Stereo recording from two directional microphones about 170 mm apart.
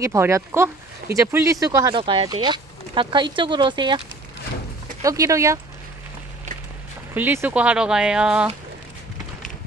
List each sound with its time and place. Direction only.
0.0 s speech: 15° right (ahead or behind)
5.0 s speech: 20° right (ahead or behind)
7.2 s speech: 10° right (ahead or behind)